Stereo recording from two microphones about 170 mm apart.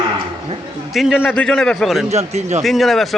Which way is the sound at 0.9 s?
Centre (ahead or behind).